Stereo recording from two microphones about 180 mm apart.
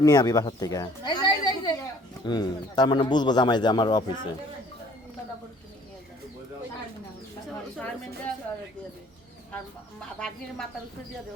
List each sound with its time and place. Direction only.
0.0 s speech: 20° left (ahead or behind)
7.5 s a sound: 10° left (ahead or behind)
10.2 s a woman's voice: 5° left (ahead or behind)